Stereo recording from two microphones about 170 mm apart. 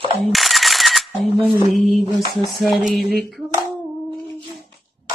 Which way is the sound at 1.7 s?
Centre (ahead or behind).